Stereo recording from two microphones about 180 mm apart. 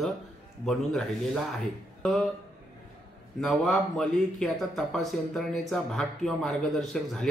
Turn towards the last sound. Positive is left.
turn(degrees=0)  # may be behind; listen again after turning